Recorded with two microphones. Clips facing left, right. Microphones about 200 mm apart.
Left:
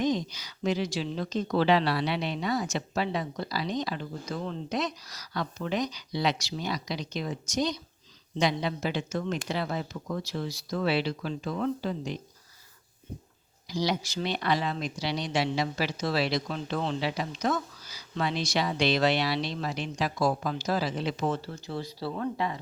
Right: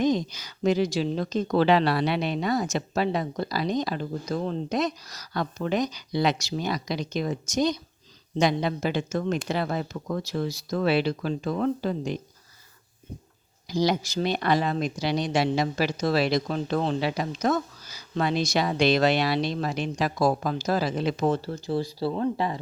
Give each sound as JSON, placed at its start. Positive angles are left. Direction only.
{"t": 0.0, "sound": "speech", "side_deg": -50}
{"t": 13.7, "sound": "speech", "side_deg": -45}